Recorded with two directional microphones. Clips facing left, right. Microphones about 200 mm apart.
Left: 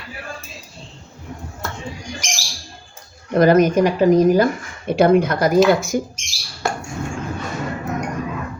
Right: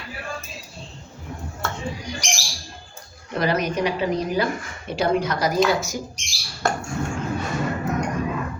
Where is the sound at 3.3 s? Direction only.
45° left (ahead or behind).